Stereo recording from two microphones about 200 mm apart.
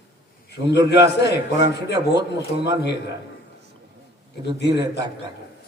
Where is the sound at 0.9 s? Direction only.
55° left (ahead or behind).